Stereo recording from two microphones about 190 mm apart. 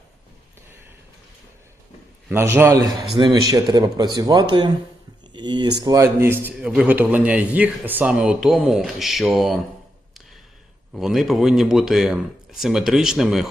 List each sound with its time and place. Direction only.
2.3 s a man's voice: 15° right (ahead or behind)
10.9 s speech: centre (ahead or behind)